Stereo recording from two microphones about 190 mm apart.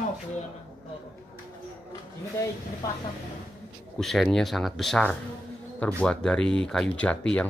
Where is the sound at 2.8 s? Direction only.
20° left (ahead or behind).